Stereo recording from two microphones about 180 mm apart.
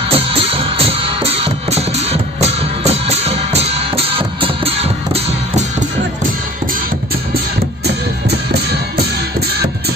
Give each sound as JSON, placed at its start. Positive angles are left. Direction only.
{"t": 0.1, "sound": "music", "side_deg": -30}
{"t": 7.8, "sound": "music", "side_deg": -65}